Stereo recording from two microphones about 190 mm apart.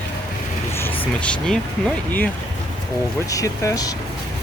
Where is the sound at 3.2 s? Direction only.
15° left (ahead or behind).